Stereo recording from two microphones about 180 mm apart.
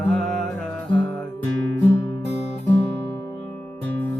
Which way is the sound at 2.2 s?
40° left (ahead or behind).